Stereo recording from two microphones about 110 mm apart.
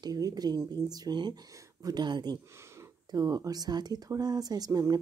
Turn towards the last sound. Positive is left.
turn(degrees=-35)  # may be behind; listen again after turning